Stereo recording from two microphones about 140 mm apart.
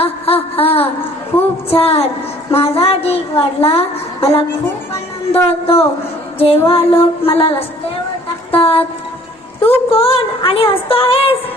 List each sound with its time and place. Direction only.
0.0 s a woman's voice: 45° left (ahead or behind)
6.7 s music: 40° left (ahead or behind)
8.5 s a woman's voice: 40° left (ahead or behind)